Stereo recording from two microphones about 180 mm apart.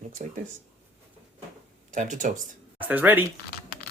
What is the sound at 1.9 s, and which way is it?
Speech, 45° right (ahead or behind).